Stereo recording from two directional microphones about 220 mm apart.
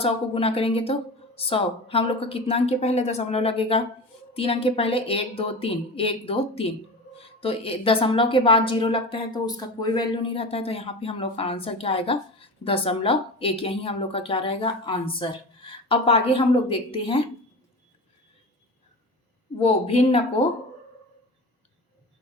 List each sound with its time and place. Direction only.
0.0 s a woman's voice: 25° left (ahead or behind)
19.5 s a woman's voice: 25° left (ahead or behind)